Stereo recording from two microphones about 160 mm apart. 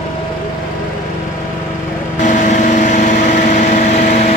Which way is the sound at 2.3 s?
50° left (ahead or behind).